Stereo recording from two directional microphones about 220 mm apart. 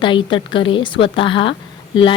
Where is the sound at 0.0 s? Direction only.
20° left (ahead or behind).